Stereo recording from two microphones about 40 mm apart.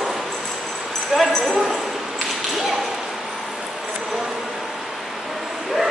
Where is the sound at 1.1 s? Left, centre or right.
Centre.